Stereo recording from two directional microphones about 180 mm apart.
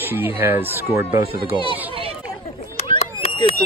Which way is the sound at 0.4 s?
10° right (ahead or behind).